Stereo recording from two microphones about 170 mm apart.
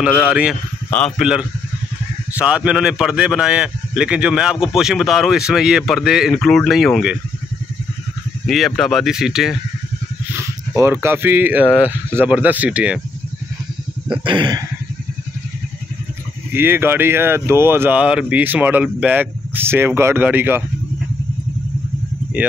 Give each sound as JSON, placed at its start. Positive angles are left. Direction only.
{"t": 0.0, "sound": "a man's voice", "side_deg": -5}
{"t": 0.8, "sound": "a man's voice", "side_deg": 5}
{"t": 8.5, "sound": "a man's voice", "side_deg": 0}
{"t": 10.3, "sound": "speech", "side_deg": -15}
{"t": 14.2, "sound": "speech", "side_deg": -25}
{"t": 16.5, "sound": "speech", "side_deg": -15}